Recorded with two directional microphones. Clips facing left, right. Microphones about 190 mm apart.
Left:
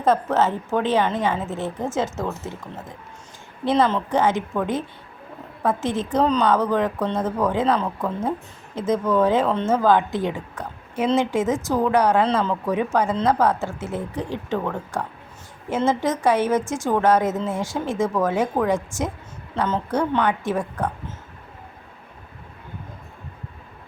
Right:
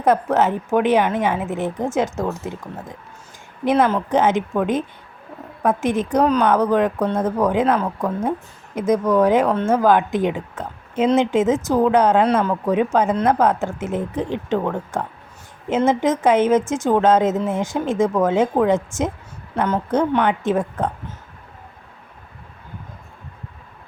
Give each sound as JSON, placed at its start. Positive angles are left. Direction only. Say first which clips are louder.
{"t": 0.0, "sound": "a woman's voice", "louder": "right 2 dB", "side_deg": -15}